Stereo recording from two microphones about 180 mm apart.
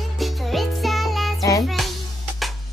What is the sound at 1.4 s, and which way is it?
Music, 20° left (ahead or behind).